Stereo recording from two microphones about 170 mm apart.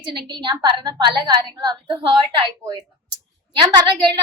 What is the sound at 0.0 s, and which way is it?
A woman's voice, 25° right (ahead or behind).